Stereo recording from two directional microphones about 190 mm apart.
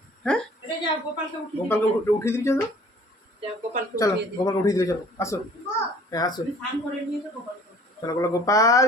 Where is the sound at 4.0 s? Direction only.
20° left (ahead or behind).